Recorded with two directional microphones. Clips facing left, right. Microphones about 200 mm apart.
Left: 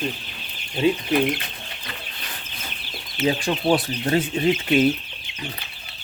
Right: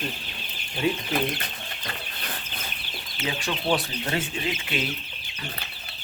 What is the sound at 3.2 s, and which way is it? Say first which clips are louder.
Speech: left 7 dB; 30° left (ahead or behind).